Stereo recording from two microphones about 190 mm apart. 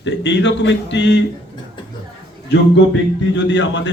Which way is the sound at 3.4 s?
70° left (ahead or behind).